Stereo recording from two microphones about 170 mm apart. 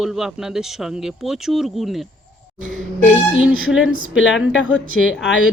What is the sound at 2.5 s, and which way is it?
Music, 50° right (ahead or behind).